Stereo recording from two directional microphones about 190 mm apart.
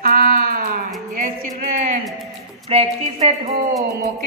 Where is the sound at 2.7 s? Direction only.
30° right (ahead or behind).